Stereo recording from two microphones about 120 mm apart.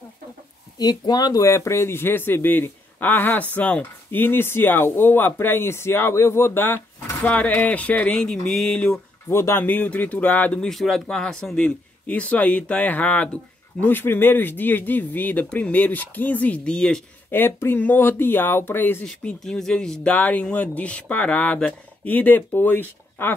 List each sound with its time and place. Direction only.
0.7 s speech: 35° left (ahead or behind); by 9.0 s 5° left (ahead or behind)
9.3 s speech: 20° left (ahead or behind); by 17.0 s 5° left (ahead or behind)
17.3 s speech: 20° left (ahead or behind)
19.0 s speech: 5° left (ahead or behind)